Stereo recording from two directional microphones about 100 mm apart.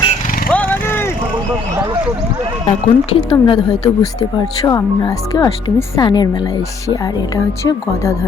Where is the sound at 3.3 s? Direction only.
45° left (ahead or behind).